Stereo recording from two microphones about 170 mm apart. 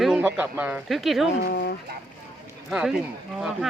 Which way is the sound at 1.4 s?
70° left (ahead or behind).